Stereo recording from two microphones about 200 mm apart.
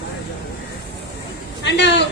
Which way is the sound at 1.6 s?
60° left (ahead or behind).